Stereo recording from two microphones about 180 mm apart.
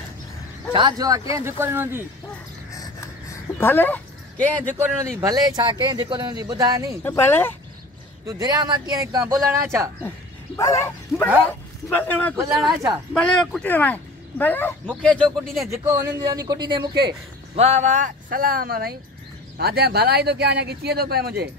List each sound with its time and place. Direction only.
0.7 s speech: 25° right (ahead or behind)
3.5 s speech: 10° left (ahead or behind)
4.7 s speech: 15° right (ahead or behind)
7.0 s speech: 10° left (ahead or behind)
8.3 s speech: 20° right (ahead or behind)
10.0 s speech: 15° left (ahead or behind)
12.4 s speech: centre (ahead or behind)
15.7 s speech: 15° right (ahead or behind)
17.6 s speech: 40° right (ahead or behind); by 21.5 s 60° right (ahead or behind)